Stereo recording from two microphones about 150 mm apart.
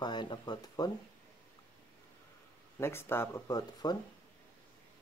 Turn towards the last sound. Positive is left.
turn(degrees=25)  # may be behind; listen again after turning